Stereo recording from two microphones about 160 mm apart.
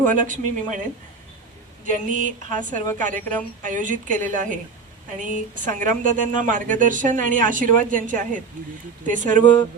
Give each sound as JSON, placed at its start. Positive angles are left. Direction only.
{"t": 0.0, "sound": "a woman's voice", "side_deg": -55}
{"t": 1.8, "sound": "a woman's voice", "side_deg": -55}